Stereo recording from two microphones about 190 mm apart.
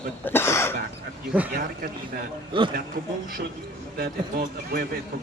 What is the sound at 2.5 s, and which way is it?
Speech, 25° right (ahead or behind).